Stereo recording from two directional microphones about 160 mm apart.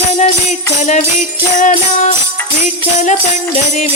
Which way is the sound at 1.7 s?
45° left (ahead or behind).